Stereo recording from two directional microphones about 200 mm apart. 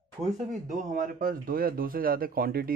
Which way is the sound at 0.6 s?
40° right (ahead or behind).